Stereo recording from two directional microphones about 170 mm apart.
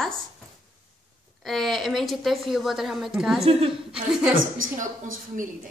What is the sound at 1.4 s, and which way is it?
A woman's voice, centre (ahead or behind).